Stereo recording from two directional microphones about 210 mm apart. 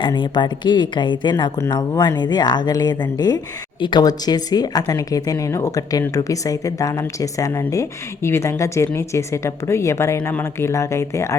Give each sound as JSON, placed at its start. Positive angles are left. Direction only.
{"t": 0.0, "sound": "a woman's voice", "side_deg": 20}